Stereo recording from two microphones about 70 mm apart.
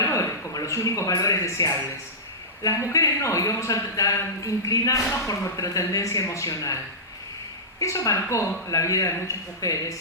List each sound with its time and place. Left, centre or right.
0.0 s a sound: left
2.6 s a woman's voice: left
7.8 s speech: left